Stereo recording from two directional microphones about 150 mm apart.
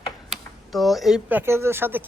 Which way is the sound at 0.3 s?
Centre (ahead or behind).